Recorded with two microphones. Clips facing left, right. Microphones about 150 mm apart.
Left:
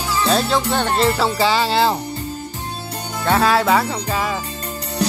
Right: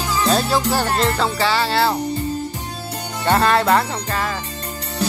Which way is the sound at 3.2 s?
Centre (ahead or behind).